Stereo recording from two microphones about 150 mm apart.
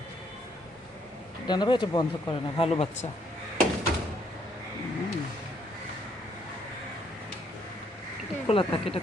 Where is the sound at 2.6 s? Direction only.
40° left (ahead or behind).